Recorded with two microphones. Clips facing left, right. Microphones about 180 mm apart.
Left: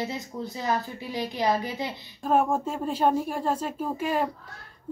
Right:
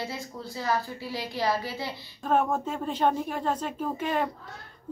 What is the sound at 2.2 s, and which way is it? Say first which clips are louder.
A woman's voice: left 2 dB; 10° left (ahead or behind).